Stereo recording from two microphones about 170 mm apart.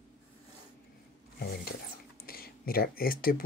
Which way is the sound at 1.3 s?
65° left (ahead or behind).